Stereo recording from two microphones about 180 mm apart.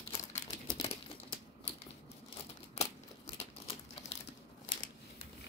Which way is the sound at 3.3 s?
30° left (ahead or behind).